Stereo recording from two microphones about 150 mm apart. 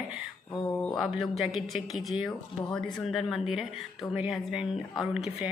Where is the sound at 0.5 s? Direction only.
15° left (ahead or behind).